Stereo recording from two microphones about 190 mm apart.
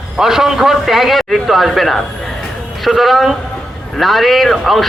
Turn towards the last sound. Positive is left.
turn(degrees=0)  # may be behind; listen again after turning